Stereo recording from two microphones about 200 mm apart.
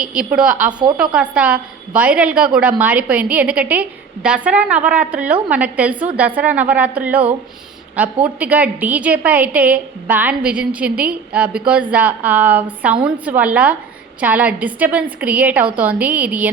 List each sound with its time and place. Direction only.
0.0 s a woman's voice: 5° right (ahead or behind)
0.7 s a woman's voice: 20° right (ahead or behind)
0.9 s a woman's voice: 5° right (ahead or behind)